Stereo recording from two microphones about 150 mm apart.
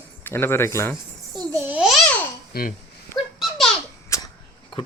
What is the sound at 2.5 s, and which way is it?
Speech, 75° left (ahead or behind).